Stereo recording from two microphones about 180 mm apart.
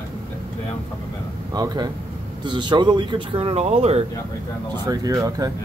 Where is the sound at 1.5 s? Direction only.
20° right (ahead or behind).